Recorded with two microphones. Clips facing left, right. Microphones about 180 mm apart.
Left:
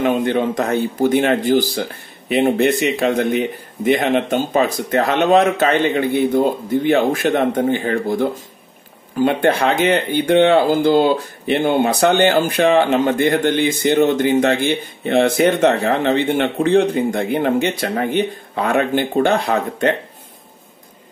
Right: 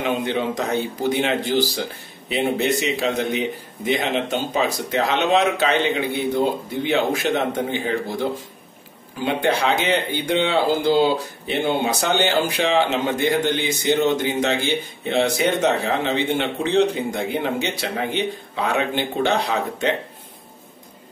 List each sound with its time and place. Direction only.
0.0 s speech: 50° left (ahead or behind)